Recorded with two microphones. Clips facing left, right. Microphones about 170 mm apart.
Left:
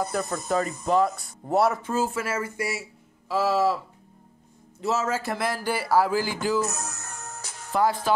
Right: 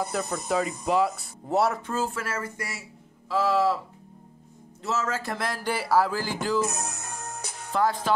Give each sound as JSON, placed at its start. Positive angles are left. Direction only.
{"t": 0.0, "sound": "speech", "side_deg": 0}
{"t": 4.8, "sound": "speech", "side_deg": 10}
{"t": 6.7, "sound": "music", "side_deg": -15}
{"t": 7.7, "sound": "speech", "side_deg": 5}